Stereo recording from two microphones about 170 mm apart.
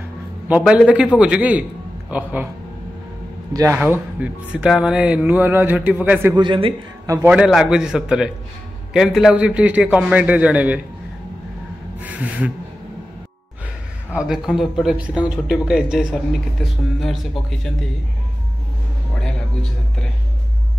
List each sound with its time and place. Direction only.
0.5 s speech: 5° right (ahead or behind)
3.5 s speech: 15° right (ahead or behind)
6.3 s a man's voice: 30° right (ahead or behind)
7.2 s speech: 5° right (ahead or behind)
12.0 s speech: 10° right (ahead or behind)
14.1 s speech: 5° right (ahead or behind)
19.2 s a man's voice: 5° left (ahead or behind)